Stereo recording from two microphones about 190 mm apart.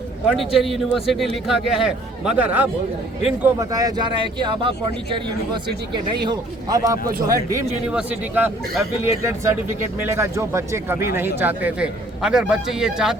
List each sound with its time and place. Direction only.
0.3 s a man's voice: centre (ahead or behind); by 4.7 s 25° right (ahead or behind)
5.9 s speech: 25° right (ahead or behind); by 13.1 s 5° right (ahead or behind)